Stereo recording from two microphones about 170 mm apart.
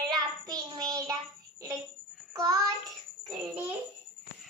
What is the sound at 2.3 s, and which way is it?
Child singing, 20° right (ahead or behind).